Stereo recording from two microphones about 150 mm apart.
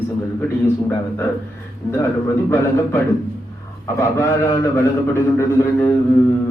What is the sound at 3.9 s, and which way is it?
Speech, 20° left (ahead or behind).